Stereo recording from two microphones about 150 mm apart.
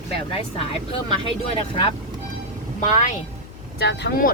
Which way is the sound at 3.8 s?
85° left.